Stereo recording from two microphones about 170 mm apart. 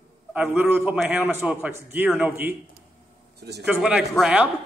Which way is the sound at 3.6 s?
5° right (ahead or behind).